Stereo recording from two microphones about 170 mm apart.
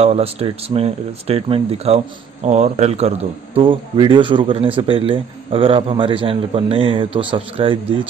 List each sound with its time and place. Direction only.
0.0 s speech: 35° right (ahead or behind)